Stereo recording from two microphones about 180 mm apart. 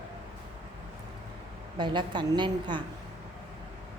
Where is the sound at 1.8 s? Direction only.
25° right (ahead or behind).